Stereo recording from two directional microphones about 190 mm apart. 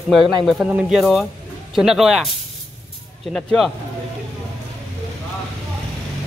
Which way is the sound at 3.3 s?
Centre (ahead or behind).